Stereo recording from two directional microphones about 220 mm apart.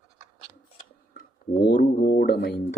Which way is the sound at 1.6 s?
40° left (ahead or behind).